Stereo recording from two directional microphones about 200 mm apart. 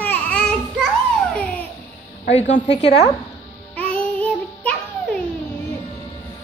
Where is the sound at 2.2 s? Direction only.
35° left (ahead or behind).